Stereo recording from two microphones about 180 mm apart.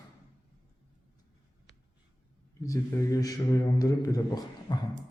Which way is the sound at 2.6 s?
20° left (ahead or behind).